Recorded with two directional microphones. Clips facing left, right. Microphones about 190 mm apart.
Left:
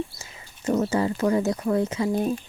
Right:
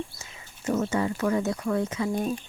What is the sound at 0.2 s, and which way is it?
Speech, 30° left (ahead or behind).